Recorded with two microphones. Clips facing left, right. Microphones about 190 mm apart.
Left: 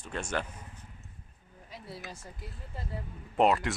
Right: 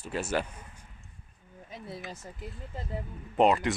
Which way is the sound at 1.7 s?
20° right (ahead or behind).